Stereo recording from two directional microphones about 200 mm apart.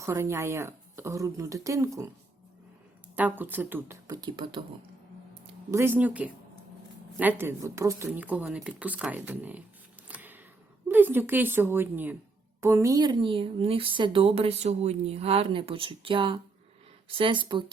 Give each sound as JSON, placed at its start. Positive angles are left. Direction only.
{"t": 0.0, "sound": "speech", "side_deg": -15}
{"t": 3.2, "sound": "speech", "side_deg": -10}
{"t": 5.7, "sound": "speech", "side_deg": -10}
{"t": 10.1, "sound": "a sound", "side_deg": -10}
{"t": 10.8, "sound": "a woman's voice", "side_deg": -10}